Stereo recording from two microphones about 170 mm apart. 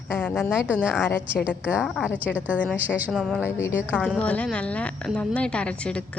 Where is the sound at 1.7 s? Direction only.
5° right (ahead or behind).